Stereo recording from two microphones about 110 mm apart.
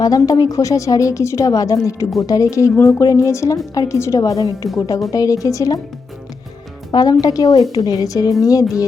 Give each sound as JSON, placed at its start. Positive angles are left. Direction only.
{"t": 0.0, "sound": "a woman's voice", "side_deg": 35}
{"t": 2.7, "sound": "speech", "side_deg": 15}
{"t": 3.0, "sound": "a woman's voice", "side_deg": 30}
{"t": 4.6, "sound": "a woman's voice", "side_deg": 0}
{"t": 5.1, "sound": "a woman's voice", "side_deg": 30}
{"t": 6.9, "sound": "a woman's voice", "side_deg": 35}